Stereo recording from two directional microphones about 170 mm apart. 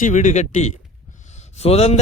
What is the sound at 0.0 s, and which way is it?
A man's voice, 50° left (ahead or behind).